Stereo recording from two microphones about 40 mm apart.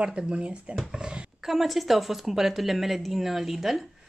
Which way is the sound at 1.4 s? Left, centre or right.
Centre.